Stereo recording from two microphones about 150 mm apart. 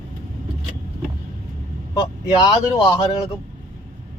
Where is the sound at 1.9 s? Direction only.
25° left (ahead or behind).